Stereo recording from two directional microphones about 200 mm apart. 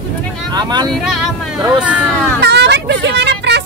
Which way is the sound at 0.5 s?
20° right (ahead or behind).